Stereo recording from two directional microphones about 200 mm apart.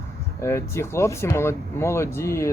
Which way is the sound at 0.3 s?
15° left (ahead or behind).